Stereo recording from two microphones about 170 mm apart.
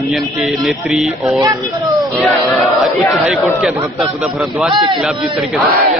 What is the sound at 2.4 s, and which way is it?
Speech, centre (ahead or behind).